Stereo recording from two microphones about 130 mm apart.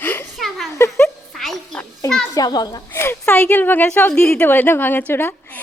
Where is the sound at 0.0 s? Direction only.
15° left (ahead or behind).